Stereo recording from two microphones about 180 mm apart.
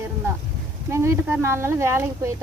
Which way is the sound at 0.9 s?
15° right (ahead or behind).